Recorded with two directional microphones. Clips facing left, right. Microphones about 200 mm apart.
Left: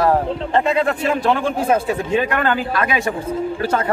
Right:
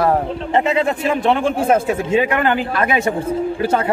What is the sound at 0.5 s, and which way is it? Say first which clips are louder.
A woman's voice: right 1 dB; 20° right (ahead or behind).